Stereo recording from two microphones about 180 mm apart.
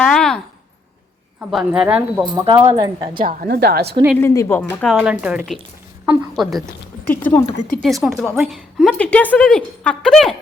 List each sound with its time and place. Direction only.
0.0 s a sound: 5° left (ahead or behind)
1.4 s speech: 5° right (ahead or behind)
2.2 s speech: 25° right (ahead or behind)
3.2 s a woman's voice: 55° right (ahead or behind)
4.2 s speech: 15° left (ahead or behind)
4.9 s speech: 5° right (ahead or behind)
7.4 s speech: 45° left (ahead or behind)
7.8 s speech: centre (ahead or behind)